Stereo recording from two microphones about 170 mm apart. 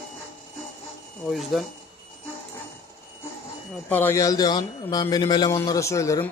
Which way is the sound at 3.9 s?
15° left (ahead or behind).